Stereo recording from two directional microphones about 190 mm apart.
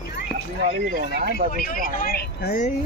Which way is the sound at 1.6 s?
50° left (ahead or behind).